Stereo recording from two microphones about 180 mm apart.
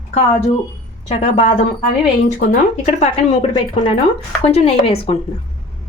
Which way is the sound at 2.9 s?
35° left (ahead or behind).